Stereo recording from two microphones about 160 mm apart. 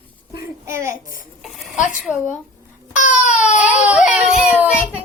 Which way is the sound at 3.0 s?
55° left (ahead or behind).